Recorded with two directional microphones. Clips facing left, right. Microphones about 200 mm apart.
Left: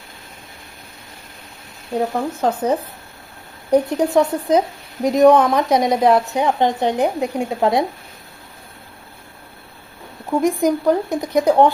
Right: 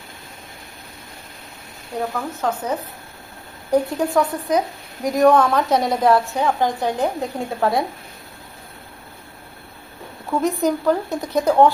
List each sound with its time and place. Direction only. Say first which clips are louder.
2.1 s a woman's voice: left 4 dB; 30° left (ahead or behind)
10.3 s speech: left 3 dB; 15° left (ahead or behind)